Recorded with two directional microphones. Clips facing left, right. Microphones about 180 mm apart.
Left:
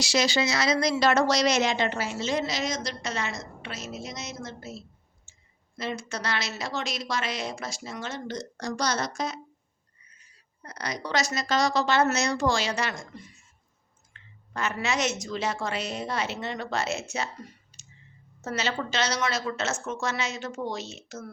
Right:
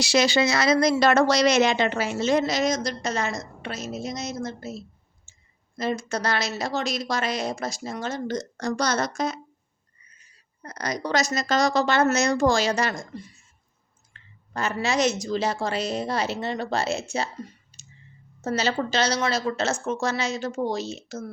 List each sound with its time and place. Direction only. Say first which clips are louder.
0.0 s a woman's voice: right 4 dB; 60° right (ahead or behind)
10.6 s a woman's voice: right 5 dB; 45° right (ahead or behind)
17.7 s a sound: right 3 dB; 30° right (ahead or behind)
18.4 s speech: right 5 dB; 35° right (ahead or behind)